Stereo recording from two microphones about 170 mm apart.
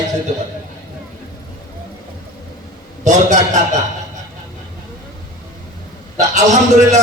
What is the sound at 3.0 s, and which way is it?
Speech, 45° right (ahead or behind).